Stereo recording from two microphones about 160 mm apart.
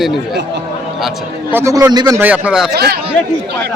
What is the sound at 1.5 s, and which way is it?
Speech, 20° right (ahead or behind).